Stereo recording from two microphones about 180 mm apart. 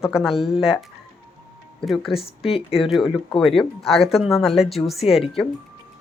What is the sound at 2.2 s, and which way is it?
Speech, 30° left (ahead or behind).